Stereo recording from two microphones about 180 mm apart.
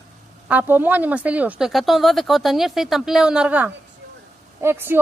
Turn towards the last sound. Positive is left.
turn(degrees=-15)  # may be behind; listen again after turning